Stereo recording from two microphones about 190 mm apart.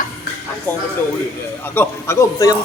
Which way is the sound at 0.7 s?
10° left (ahead or behind).